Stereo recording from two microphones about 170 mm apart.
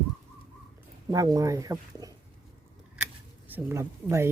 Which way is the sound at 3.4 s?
10° right (ahead or behind).